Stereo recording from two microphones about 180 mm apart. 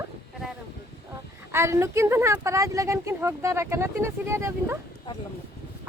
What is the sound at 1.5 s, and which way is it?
Speech, 15° right (ahead or behind).